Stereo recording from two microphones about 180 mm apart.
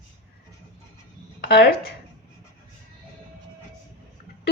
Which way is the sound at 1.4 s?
60° left (ahead or behind).